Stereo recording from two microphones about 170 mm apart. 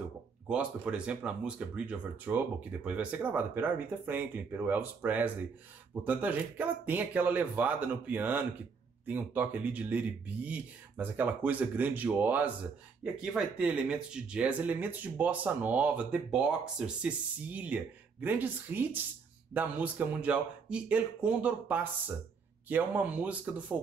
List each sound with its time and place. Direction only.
0.5 s speech: 5° right (ahead or behind)